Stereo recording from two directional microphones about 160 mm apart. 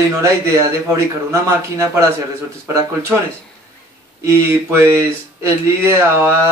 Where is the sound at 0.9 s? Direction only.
20° right (ahead or behind).